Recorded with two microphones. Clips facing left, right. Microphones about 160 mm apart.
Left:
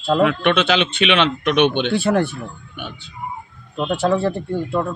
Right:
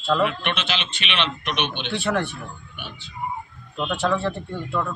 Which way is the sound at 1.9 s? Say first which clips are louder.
Left 6 dB; 40° left (ahead or behind).